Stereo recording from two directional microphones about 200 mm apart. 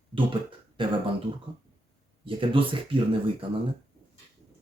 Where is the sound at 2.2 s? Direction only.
25° right (ahead or behind).